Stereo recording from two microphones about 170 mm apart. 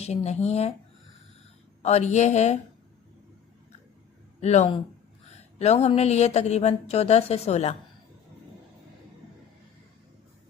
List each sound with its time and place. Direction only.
0.0 s speech: 40° left (ahead or behind)
1.8 s speech: 40° left (ahead or behind)
4.4 s speech: 40° left (ahead or behind)